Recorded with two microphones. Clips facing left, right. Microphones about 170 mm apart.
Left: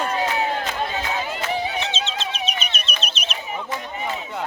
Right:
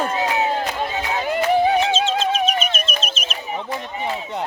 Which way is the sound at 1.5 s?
50° right (ahead or behind).